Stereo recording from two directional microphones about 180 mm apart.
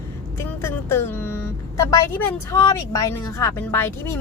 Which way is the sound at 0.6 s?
15° left (ahead or behind).